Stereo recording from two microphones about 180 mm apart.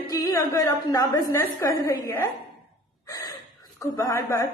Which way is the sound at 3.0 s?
20° left (ahead or behind).